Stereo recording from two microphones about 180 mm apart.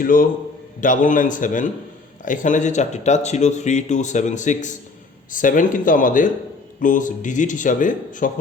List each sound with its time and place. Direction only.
0.0 s speech: 50° left (ahead or behind)